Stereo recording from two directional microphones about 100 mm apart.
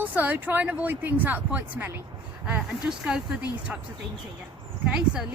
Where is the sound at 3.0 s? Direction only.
10° right (ahead or behind).